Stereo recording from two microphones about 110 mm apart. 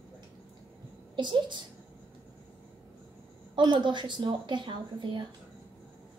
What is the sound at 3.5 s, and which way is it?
A child's voice, 45° right (ahead or behind).